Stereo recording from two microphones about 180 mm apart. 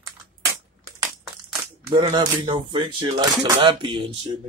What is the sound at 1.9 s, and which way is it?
Speech, 25° right (ahead or behind).